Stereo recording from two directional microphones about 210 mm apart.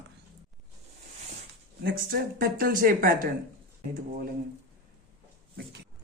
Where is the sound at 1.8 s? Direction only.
45° right (ahead or behind).